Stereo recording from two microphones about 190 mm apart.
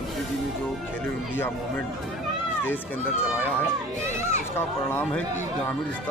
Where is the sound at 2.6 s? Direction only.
10° left (ahead or behind).